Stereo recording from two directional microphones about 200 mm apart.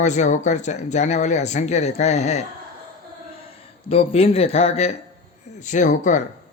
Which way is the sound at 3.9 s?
30° left (ahead or behind).